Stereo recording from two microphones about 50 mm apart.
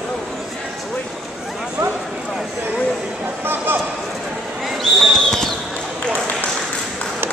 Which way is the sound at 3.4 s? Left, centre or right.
Right.